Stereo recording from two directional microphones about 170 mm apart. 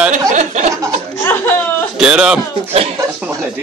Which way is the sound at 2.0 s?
5° right (ahead or behind).